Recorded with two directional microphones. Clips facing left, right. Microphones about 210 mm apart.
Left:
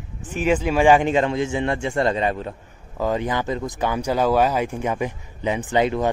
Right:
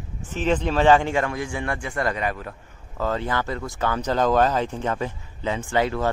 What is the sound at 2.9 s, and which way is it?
Speech, 15° left (ahead or behind).